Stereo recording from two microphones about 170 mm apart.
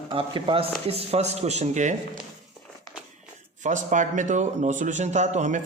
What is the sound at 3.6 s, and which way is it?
Speech, 45° right (ahead or behind).